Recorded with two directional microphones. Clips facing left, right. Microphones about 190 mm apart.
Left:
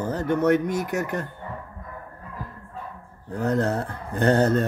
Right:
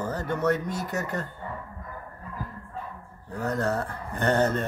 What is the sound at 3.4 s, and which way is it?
Speech, 20° left (ahead or behind).